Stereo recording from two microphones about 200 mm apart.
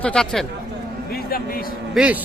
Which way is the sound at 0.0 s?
5° left (ahead or behind).